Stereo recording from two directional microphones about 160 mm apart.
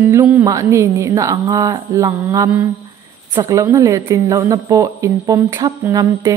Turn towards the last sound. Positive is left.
turn(degrees=-20)  # may be behind; listen again after turning